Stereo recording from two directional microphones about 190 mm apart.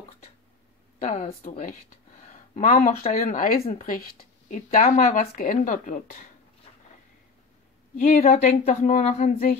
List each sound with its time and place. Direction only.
1.0 s speech: 40° left (ahead or behind)
8.2 s speech: 40° left (ahead or behind)